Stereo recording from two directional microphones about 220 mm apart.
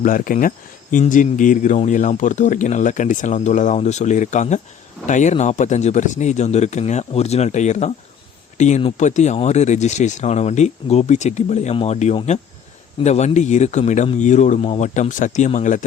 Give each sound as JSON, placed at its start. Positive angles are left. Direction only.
{"t": 0.0, "sound": "speech", "side_deg": 40}